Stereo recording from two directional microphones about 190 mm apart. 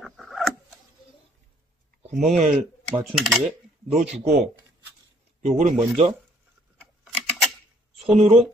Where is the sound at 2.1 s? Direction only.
Centre (ahead or behind).